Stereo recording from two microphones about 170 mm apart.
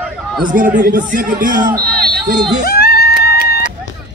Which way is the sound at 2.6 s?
65° left (ahead or behind).